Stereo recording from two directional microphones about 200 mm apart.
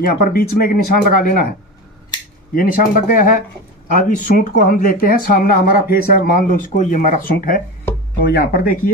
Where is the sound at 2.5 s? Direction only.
45° left (ahead or behind).